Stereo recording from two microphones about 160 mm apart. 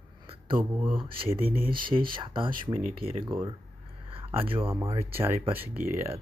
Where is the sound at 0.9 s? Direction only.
35° right (ahead or behind).